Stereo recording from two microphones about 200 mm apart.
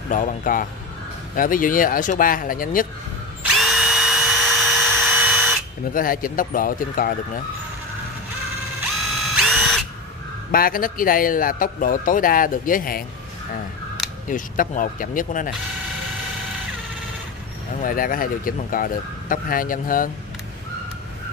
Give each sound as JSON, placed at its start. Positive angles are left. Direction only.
{"t": 0.1, "sound": "speech", "side_deg": 40}
{"t": 3.5, "sound": "drill", "side_deg": 0}
{"t": 5.9, "sound": "speech", "side_deg": 45}
{"t": 9.3, "sound": "drill", "side_deg": 0}
{"t": 10.5, "sound": "speech", "side_deg": 45}
{"t": 14.3, "sound": "speech", "side_deg": 40}
{"t": 17.8, "sound": "speech", "side_deg": 45}